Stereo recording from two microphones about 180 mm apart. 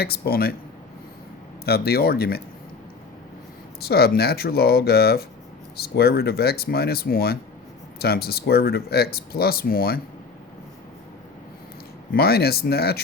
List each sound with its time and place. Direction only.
0.0 s speech: 60° left (ahead or behind)
1.6 s speech: 60° left (ahead or behind)
3.8 s speech: 60° left (ahead or behind)
12.1 s speech: 60° left (ahead or behind)